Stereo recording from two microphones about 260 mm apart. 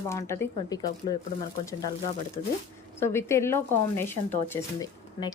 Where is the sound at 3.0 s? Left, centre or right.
Centre.